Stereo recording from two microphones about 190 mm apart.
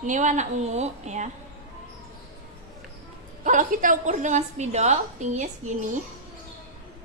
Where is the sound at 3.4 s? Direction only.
45° right (ahead or behind).